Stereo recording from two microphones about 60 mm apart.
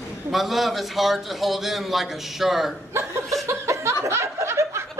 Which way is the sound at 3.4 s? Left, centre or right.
Right.